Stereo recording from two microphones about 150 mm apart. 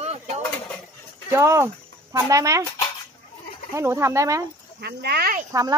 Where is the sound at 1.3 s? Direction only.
20° right (ahead or behind).